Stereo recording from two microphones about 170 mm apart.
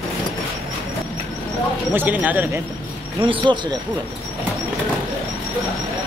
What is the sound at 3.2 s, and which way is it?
Speech, 30° right (ahead or behind).